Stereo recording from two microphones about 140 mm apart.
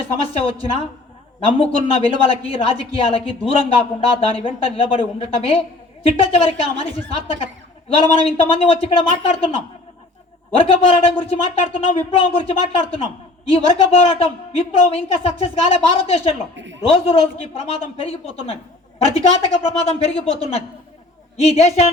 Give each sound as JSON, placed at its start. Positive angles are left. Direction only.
{"t": 0.0, "sound": "a woman's voice", "side_deg": 45}
{"t": 1.5, "sound": "a woman's voice", "side_deg": 45}
{"t": 10.6, "sound": "a woman's voice", "side_deg": 45}